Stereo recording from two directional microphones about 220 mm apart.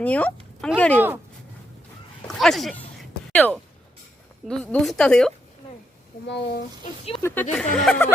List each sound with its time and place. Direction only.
0.0 s a woman's voice: 5° left (ahead or behind)
2.2 s a woman's voice: centre (ahead or behind)
6.2 s speech: 50° left (ahead or behind)
7.2 s a woman's voice: 10° left (ahead or behind)